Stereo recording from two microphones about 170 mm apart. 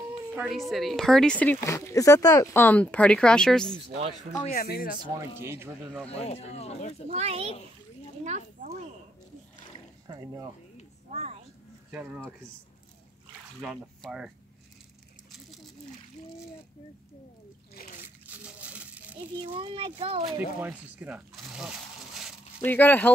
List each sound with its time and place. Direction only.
0.4 s speech: centre (ahead or behind)
4.5 s speech: 60° left (ahead or behind)
5.4 s speech: 15° right (ahead or behind)
6.0 s speech: 35° left (ahead or behind)
7.1 s speech: 35° right (ahead or behind)
10.0 s speech: 20° right (ahead or behind)
11.9 s speech: 10° right (ahead or behind)
13.6 s speech: centre (ahead or behind)
17.8 s a sound: 60° left (ahead or behind)
18.2 s crumpling: 10° right (ahead or behind)
19.5 s speech: 30° right (ahead or behind)
20.3 s speech: 10° right (ahead or behind)
22.6 s speech: 10° left (ahead or behind)